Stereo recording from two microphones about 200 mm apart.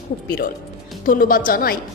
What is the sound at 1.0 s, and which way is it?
Speech, 45° left (ahead or behind).